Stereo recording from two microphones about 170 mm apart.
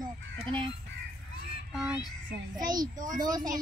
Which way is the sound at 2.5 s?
25° right (ahead or behind).